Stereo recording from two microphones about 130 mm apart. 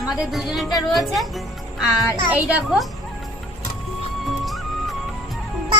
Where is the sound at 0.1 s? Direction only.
Centre (ahead or behind).